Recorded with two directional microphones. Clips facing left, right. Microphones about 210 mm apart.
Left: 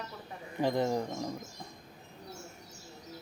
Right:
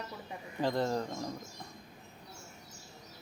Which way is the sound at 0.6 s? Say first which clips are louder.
Left 2 dB; 15° left (ahead or behind).